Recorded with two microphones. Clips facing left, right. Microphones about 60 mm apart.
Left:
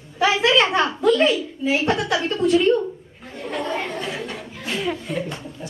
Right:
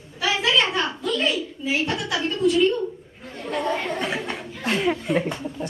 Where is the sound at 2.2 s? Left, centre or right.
Left.